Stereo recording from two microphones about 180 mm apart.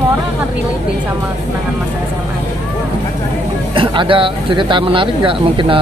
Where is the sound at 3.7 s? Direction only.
30° right (ahead or behind).